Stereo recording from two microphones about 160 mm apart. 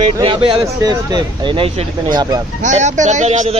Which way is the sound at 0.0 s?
35° right (ahead or behind).